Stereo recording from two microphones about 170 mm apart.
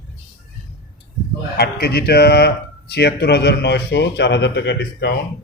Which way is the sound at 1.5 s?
70° left (ahead or behind).